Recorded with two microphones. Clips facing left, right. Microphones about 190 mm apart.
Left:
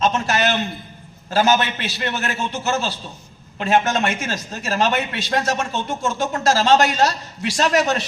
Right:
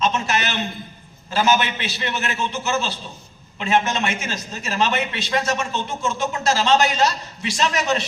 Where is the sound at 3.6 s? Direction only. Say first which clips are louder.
Left 2 dB; 45° left (ahead or behind).